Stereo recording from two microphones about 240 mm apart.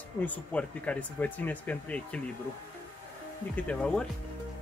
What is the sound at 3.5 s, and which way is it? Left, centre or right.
Speech, centre.